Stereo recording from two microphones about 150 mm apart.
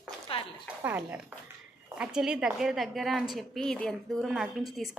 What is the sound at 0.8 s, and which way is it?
Speech, 10° right (ahead or behind).